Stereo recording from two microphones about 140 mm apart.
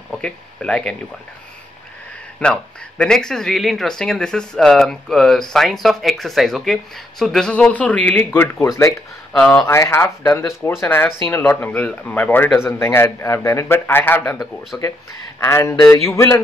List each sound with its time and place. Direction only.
0.1 s speech: 5° left (ahead or behind)
2.4 s a man's voice: 5° left (ahead or behind)
15.4 s speech: 20° left (ahead or behind)